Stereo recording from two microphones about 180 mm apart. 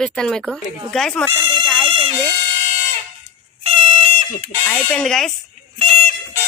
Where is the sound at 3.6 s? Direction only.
30° right (ahead or behind).